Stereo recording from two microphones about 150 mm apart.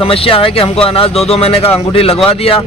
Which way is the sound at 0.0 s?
40° left (ahead or behind).